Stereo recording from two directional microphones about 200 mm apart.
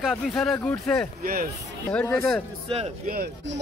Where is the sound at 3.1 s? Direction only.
50° right (ahead or behind).